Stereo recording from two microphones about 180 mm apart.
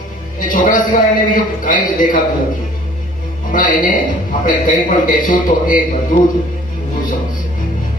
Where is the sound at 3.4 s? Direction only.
50° left (ahead or behind).